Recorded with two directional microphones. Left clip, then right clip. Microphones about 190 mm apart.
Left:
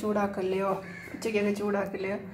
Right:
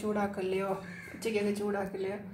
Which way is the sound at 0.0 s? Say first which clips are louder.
Left 4 dB; 20° left (ahead or behind).